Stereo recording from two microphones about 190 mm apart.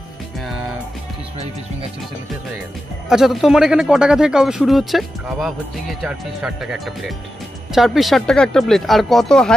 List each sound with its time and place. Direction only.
3.1 s speech: centre (ahead or behind)